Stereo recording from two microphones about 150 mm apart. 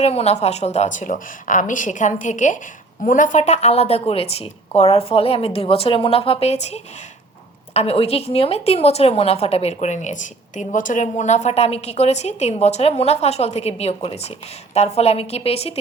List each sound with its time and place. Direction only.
0.0 s a woman's voice: 45° left (ahead or behind)